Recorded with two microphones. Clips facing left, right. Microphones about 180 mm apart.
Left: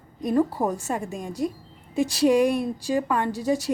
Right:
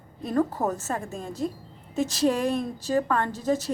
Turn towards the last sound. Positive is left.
turn(degrees=10)  # may be behind; listen again after turning